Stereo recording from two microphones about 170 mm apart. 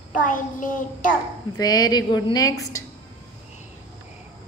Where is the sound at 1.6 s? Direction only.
20° left (ahead or behind).